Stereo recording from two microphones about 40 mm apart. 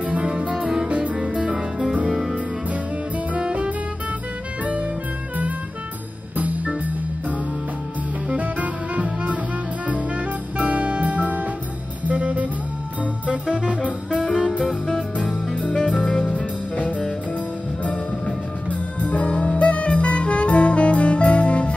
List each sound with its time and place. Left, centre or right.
0.0 s music: right
0.6 s music: centre
0.8 s music: right
1.4 s music: right
2.0 s music: centre
3.3 s music: right
6.3 s music: right
8.4 s music: right
10.6 s music: right
14.6 s music: centre
15.1 s music: left
18.7 s music: left